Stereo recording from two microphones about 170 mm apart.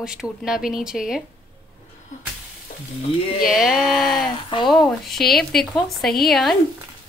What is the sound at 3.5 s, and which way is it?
Speech, centre (ahead or behind).